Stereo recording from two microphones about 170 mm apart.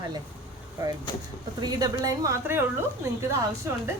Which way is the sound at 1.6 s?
25° right (ahead or behind).